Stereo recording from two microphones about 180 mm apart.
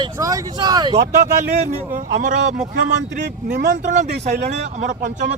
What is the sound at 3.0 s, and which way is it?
Speech, 75° right (ahead or behind).